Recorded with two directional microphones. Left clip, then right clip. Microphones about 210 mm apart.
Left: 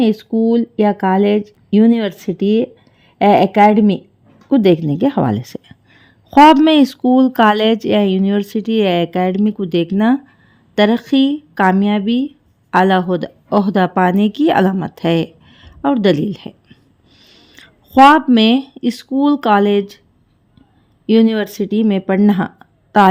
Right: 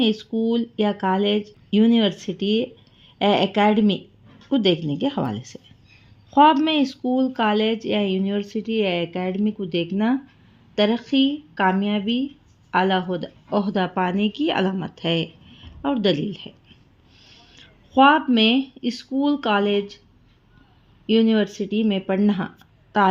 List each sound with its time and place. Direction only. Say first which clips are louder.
0.0 s a woman's voice: left 7 dB; 45° left (ahead or behind)
21.1 s speech: left 5 dB; 55° left (ahead or behind)